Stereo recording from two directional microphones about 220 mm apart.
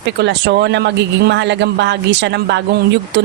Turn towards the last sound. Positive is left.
turn(degrees=-50)  # may be behind; listen again after turning